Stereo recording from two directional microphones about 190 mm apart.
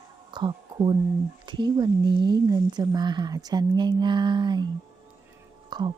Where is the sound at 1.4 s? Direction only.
25° right (ahead or behind).